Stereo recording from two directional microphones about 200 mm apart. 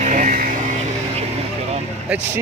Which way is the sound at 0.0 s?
40° right (ahead or behind).